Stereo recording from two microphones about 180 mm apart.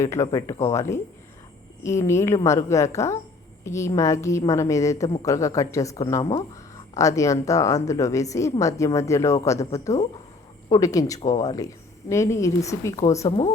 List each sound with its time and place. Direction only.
0.0 s speech: 15° left (ahead or behind)